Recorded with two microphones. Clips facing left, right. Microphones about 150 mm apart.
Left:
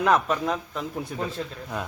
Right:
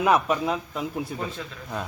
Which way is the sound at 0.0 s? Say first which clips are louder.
Right 1 dB; 10° right (ahead or behind).